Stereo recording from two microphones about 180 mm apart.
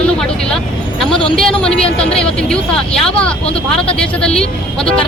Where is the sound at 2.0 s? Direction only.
5° left (ahead or behind).